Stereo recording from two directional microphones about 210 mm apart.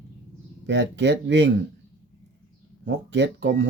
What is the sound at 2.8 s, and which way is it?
Speech, 55° right (ahead or behind).